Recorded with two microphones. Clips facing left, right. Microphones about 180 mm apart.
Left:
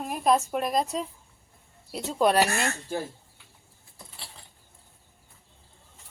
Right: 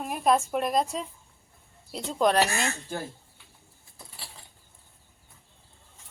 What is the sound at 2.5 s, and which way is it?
Speech, 55° left (ahead or behind).